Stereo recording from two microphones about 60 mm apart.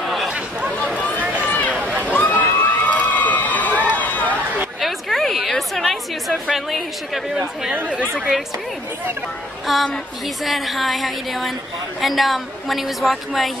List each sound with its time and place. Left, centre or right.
0.0 s chatter: centre
0.3 s chatter: centre
0.7 s a sound: left
1.2 s run: right
1.7 s a sound: right
2.0 s crowd: left
3.9 s run: left
4.7 s a sound: centre
7.3 s speech: right
9.7 s a woman's voice: centre